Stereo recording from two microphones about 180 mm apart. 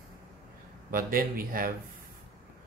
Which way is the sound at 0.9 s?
50° right (ahead or behind).